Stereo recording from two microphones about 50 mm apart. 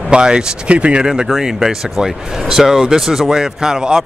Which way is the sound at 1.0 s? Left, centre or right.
Centre.